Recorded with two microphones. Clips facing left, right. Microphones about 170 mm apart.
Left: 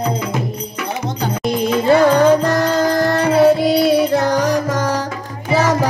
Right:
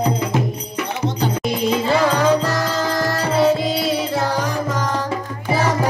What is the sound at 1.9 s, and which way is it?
Music, 55° left (ahead or behind).